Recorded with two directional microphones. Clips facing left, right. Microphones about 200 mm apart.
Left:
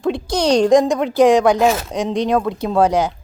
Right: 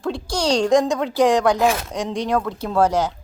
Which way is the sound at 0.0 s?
20° left (ahead or behind).